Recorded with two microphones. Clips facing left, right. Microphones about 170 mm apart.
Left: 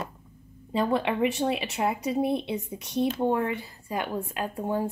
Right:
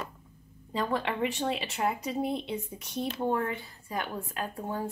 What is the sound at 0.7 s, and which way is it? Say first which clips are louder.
Speech: left 5 dB; 15° left (ahead or behind).